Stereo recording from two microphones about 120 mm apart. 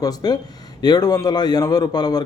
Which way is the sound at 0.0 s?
35° left (ahead or behind).